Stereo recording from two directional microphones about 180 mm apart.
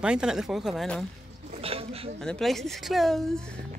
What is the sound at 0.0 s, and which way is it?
Speech, 5° right (ahead or behind).